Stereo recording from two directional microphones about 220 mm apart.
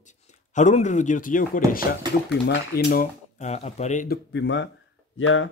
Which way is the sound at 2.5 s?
45° left (ahead or behind).